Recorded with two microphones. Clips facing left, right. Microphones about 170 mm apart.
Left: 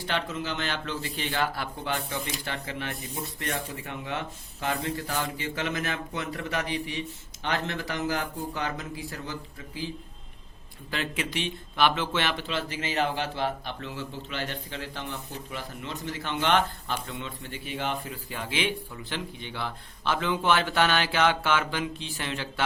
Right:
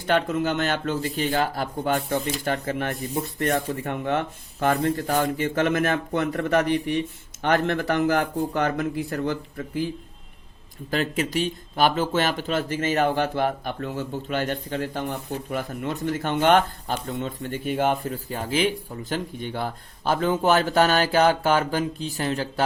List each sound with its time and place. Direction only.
0.0 s a man's voice: 50° right (ahead or behind)
10.9 s a man's voice: 40° right (ahead or behind)